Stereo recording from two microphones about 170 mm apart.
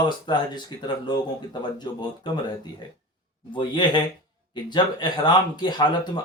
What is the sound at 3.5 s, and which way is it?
Speech, 25° left (ahead or behind).